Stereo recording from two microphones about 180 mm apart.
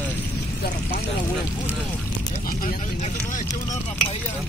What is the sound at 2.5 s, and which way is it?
Speech, 50° left (ahead or behind).